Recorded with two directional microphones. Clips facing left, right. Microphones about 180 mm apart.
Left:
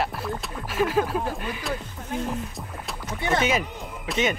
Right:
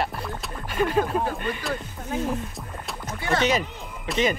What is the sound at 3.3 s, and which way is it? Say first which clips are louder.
Speech: right 2 dB; 5° left (ahead or behind).